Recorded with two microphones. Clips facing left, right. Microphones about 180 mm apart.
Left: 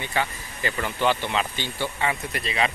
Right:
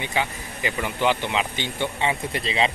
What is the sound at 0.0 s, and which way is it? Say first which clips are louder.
Speech: right 1 dB; 15° right (ahead or behind).